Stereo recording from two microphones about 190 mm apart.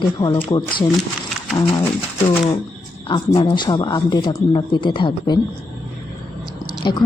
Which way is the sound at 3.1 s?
25° left (ahead or behind).